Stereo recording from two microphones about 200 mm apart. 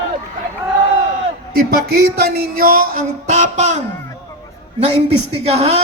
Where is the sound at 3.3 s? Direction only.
35° right (ahead or behind).